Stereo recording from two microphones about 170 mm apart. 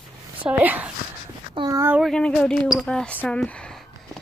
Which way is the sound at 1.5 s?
25° right (ahead or behind).